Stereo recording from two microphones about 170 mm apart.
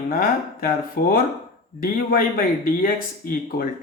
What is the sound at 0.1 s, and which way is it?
Speech, 60° left (ahead or behind).